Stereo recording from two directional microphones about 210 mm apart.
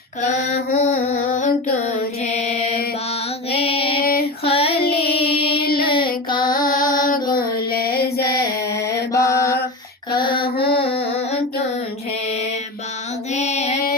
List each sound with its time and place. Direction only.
0.2 s female singing: 35° left (ahead or behind)
2.3 s mantra: 35° left (ahead or behind)
3.6 s female singing: 25° left (ahead or behind)
4.4 s child singing: 25° left (ahead or behind)
4.7 s music: 50° left (ahead or behind)
4.9 s music: 25° left (ahead or behind)
5.8 s a sound: 25° left (ahead or behind)
6.7 s music: 40° left (ahead or behind)
8.3 s a sound: 20° left (ahead or behind)
9.1 s mantra: 15° left (ahead or behind)
10.1 s female singing: 20° left (ahead or behind)
10.7 s a sound: 30° left (ahead or behind)
13.3 s female singing: 30° left (ahead or behind)